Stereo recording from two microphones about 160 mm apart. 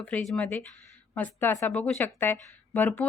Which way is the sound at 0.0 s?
10° left (ahead or behind).